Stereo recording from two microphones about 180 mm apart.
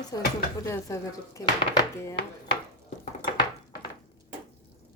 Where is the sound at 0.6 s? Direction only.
15° left (ahead or behind).